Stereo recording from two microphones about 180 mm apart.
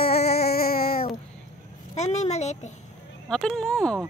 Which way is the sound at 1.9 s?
40° left (ahead or behind).